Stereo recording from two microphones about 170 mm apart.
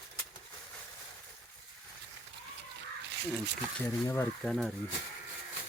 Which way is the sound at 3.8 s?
15° left (ahead or behind).